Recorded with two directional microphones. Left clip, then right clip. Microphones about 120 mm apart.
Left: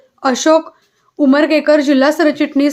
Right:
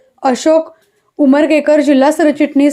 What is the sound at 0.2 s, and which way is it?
A woman's voice, 15° right (ahead or behind).